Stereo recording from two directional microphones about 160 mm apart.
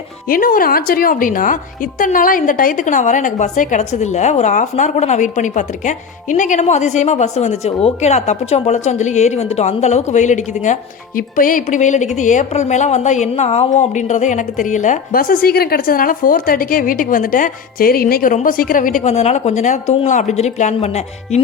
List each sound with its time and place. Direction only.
0.3 s a woman's voice: 60° left (ahead or behind)
11.2 s a woman's voice: 60° left (ahead or behind); by 21.4 s 45° left (ahead or behind)